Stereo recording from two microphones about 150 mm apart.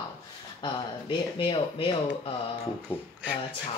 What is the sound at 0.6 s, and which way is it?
Speech, 35° left (ahead or behind).